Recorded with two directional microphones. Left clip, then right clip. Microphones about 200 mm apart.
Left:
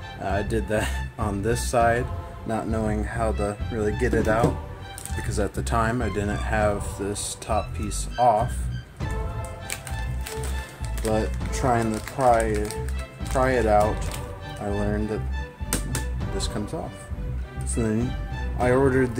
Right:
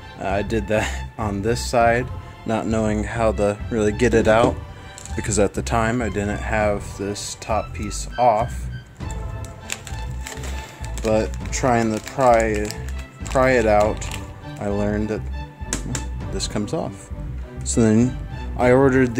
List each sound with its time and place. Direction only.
0.2 s speech: 30° right (ahead or behind)
2.4 s speech: 40° right (ahead or behind); by 8.5 s 25° right (ahead or behind)
11.0 s speech: 35° right (ahead or behind)
16.3 s speech: 35° right (ahead or behind)